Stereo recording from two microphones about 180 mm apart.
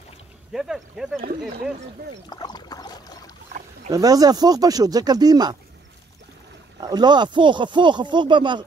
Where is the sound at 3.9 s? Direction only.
20° right (ahead or behind).